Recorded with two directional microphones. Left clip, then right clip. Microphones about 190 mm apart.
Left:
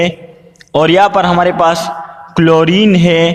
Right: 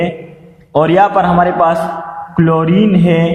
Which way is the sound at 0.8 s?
40° left (ahead or behind).